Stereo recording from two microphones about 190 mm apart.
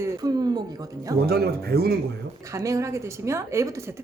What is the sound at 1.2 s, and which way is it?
Speech, 55° right (ahead or behind).